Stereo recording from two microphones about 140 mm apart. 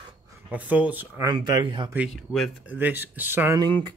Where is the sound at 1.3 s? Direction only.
30° right (ahead or behind).